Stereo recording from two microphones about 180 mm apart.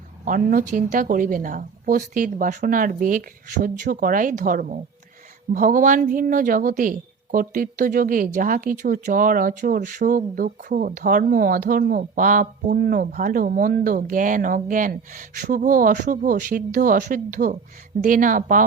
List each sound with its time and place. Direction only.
0.3 s a woman's voice: 50° right (ahead or behind)